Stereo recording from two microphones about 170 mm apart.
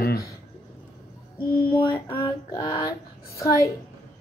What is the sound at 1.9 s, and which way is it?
Speech, 15° left (ahead or behind).